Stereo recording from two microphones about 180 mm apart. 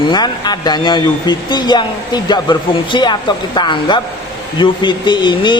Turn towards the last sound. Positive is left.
turn(degrees=25)  # may be behind; listen again after turning